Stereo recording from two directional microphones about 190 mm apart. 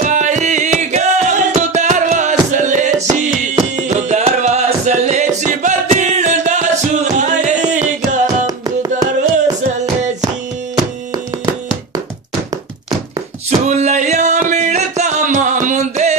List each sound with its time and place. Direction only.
0.0 s music: 40° right (ahead or behind)
8.5 s music: 20° right (ahead or behind)
13.5 s music: 35° right (ahead or behind)